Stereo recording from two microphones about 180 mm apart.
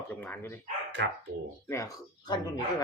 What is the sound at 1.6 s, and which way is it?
Speech, 15° left (ahead or behind).